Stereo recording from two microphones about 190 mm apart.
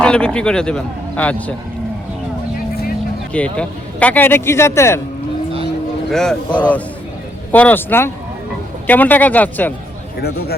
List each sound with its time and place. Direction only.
0.0 s a man's voice: 5° left (ahead or behind)
3.3 s speech: 5° left (ahead or behind)
6.1 s speech: centre (ahead or behind)
7.5 s speech: 10° left (ahead or behind)
10.2 s speech: 55° left (ahead or behind)